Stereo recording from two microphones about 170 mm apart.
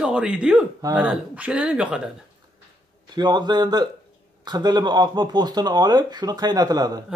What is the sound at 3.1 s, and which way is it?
Speech, 25° right (ahead or behind).